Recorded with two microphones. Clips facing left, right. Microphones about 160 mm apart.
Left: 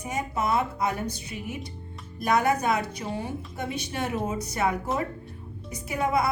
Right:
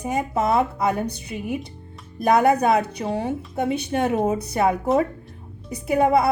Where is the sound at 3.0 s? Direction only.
65° right (ahead or behind).